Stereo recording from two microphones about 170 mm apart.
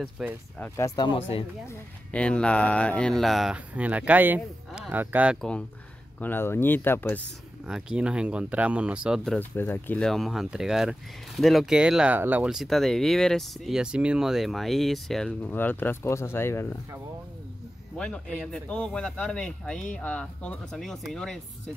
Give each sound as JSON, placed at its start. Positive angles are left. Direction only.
{"t": 0.2, "sound": "speech", "side_deg": 0}
{"t": 0.6, "sound": "speech", "side_deg": 15}
{"t": 1.7, "sound": "speech", "side_deg": 5}
{"t": 6.1, "sound": "speech", "side_deg": 10}
{"t": 7.6, "sound": "speech", "side_deg": -5}
{"t": 17.9, "sound": "speech", "side_deg": 5}